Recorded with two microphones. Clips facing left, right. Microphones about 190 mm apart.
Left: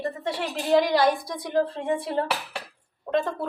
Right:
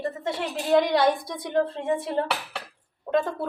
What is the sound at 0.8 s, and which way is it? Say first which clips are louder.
Speech: even; 20° right (ahead or behind).